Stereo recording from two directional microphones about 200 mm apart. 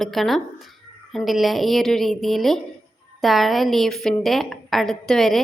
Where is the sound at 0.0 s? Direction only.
Centre (ahead or behind).